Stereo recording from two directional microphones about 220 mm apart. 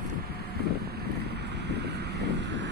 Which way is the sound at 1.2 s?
50° right (ahead or behind).